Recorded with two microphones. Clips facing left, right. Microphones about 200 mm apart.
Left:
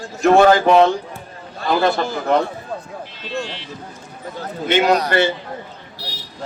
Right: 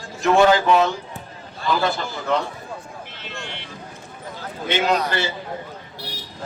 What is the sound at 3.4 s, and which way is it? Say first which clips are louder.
Speech: left 8 dB; 55° right (ahead or behind).